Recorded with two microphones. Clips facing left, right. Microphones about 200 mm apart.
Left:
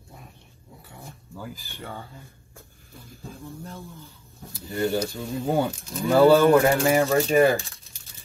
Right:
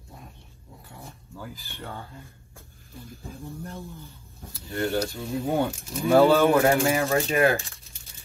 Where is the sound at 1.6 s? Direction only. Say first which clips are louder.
Left 1 dB; centre (ahead or behind).